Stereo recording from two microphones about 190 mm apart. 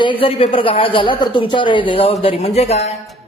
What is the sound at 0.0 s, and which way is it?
Speech, 25° left (ahead or behind).